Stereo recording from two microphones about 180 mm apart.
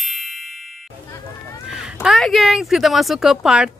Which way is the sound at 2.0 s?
Centre (ahead or behind).